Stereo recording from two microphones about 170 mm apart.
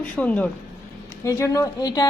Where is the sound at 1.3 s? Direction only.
20° left (ahead or behind).